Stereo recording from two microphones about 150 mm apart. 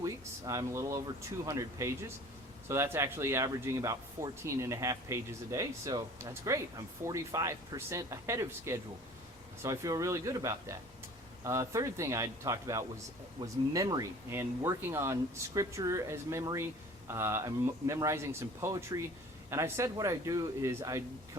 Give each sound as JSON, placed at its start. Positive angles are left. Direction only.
{"t": 0.0, "sound": "speech", "side_deg": -20}